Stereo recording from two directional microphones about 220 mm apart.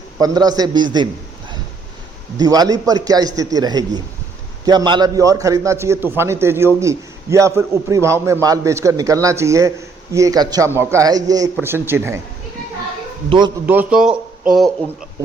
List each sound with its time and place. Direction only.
0.2 s a man's voice: 15° right (ahead or behind)
2.4 s a man's voice: 15° right (ahead or behind)
13.3 s speech: 25° right (ahead or behind)
13.7 s a man's voice: 5° right (ahead or behind)